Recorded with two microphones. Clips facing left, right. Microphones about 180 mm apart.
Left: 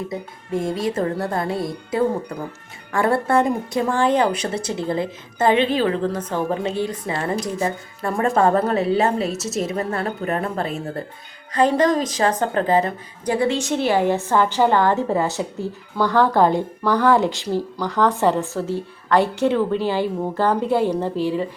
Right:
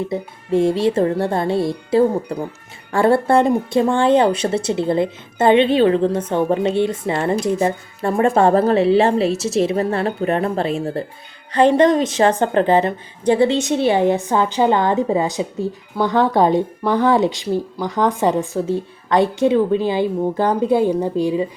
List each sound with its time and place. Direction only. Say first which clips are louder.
0.1 s speech: right 6 dB; 30° right (ahead or behind)